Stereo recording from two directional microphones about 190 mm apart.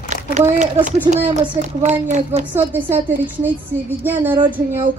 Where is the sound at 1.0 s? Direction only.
40° right (ahead or behind).